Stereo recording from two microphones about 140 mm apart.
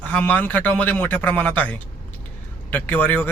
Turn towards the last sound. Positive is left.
turn(degrees=10)  # may be behind; listen again after turning